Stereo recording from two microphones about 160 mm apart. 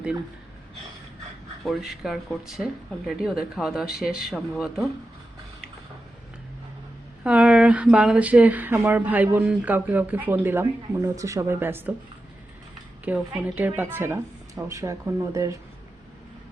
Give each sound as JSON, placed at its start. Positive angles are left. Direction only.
{"t": 1.6, "sound": "speech", "side_deg": 0}
{"t": 7.3, "sound": "speech", "side_deg": -5}
{"t": 13.1, "sound": "speech", "side_deg": -10}